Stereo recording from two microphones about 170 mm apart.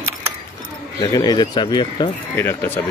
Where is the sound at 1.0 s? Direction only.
20° left (ahead or behind).